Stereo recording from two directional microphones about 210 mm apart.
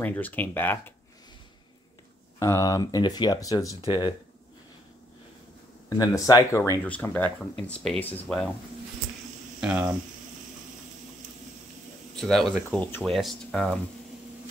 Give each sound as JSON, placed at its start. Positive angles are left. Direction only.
{"t": 0.0, "sound": "speech", "side_deg": 10}
{"t": 2.3, "sound": "speech", "side_deg": 15}
{"t": 5.9, "sound": "speech", "side_deg": 15}
{"t": 9.6, "sound": "speech", "side_deg": -5}
{"t": 12.2, "sound": "speech", "side_deg": 0}